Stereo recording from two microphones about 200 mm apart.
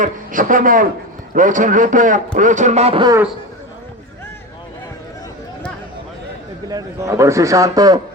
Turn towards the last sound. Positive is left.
turn(degrees=-20)  # may be behind; listen again after turning